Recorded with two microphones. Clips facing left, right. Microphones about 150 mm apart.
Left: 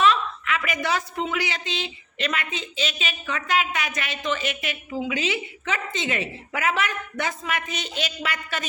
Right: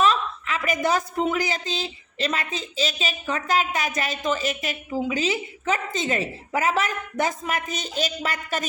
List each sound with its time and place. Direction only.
0.0 s a woman's voice: 40° right (ahead or behind)